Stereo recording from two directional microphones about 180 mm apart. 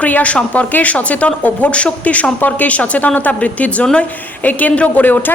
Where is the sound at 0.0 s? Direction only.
10° left (ahead or behind).